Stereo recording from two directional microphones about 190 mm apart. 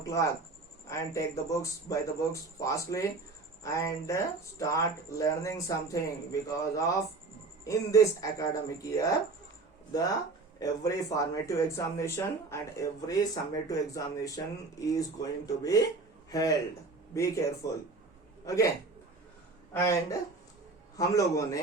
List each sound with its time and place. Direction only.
0.0 s speech: 15° left (ahead or behind)
10.6 s a man's voice: 15° left (ahead or behind)
19.7 s speech: 15° left (ahead or behind)